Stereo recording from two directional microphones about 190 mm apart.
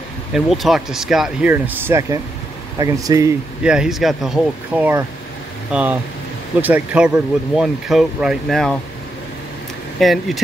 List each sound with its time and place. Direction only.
0.3 s speech: centre (ahead or behind); by 3.3 s 20° right (ahead or behind)
3.6 s speech: 5° right (ahead or behind)
9.9 s speech: centre (ahead or behind)